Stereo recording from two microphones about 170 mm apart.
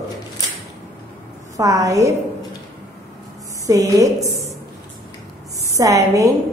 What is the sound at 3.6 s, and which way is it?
Speech, 20° right (ahead or behind).